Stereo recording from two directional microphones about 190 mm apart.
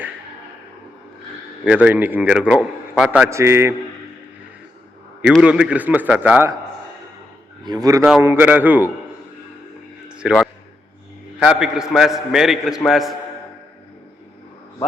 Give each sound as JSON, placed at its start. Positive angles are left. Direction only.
{"t": 1.6, "sound": "a man's voice", "side_deg": -5}
{"t": 5.2, "sound": "a man's voice", "side_deg": -5}
{"t": 7.6, "sound": "a man's voice", "side_deg": -20}
{"t": 10.1, "sound": "a sound", "side_deg": -5}
{"t": 11.3, "sound": "a man's voice", "side_deg": -5}